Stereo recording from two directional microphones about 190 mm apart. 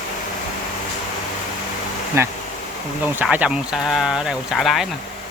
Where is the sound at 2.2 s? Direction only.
15° right (ahead or behind).